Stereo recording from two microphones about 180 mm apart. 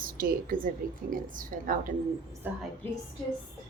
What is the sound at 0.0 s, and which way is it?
A woman's voice, 50° right (ahead or behind).